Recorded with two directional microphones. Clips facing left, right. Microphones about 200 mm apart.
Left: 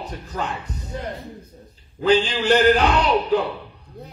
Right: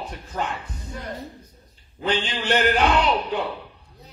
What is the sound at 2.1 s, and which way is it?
Speech, 40° left (ahead or behind).